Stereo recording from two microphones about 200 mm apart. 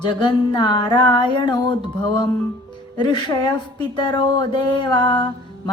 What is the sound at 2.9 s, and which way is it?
Speech, 20° left (ahead or behind).